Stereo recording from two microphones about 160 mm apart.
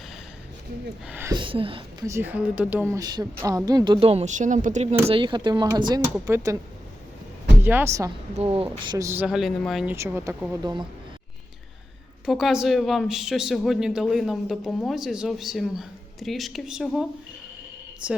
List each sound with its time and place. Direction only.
1.0 s speech: 10° right (ahead or behind)
1.3 s speech: 30° right (ahead or behind)
2.0 s speech: 15° right (ahead or behind)
4.0 s speech: 40° right (ahead or behind); by 6.6 s 20° right (ahead or behind)
7.6 s speech: 10° right (ahead or behind)
8.4 s speech: 35° right (ahead or behind); by 9.2 s 20° right (ahead or behind)
9.2 s speech: centre (ahead or behind)
9.9 s speech: 15° right (ahead or behind)
10.6 s speech: 25° right (ahead or behind)
12.2 s speech: centre (ahead or behind)